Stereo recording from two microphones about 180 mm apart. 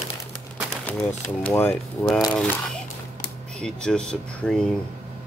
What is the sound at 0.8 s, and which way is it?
Speech, 10° left (ahead or behind).